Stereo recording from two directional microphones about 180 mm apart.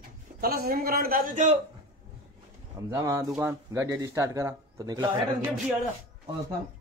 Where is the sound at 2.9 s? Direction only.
20° right (ahead or behind).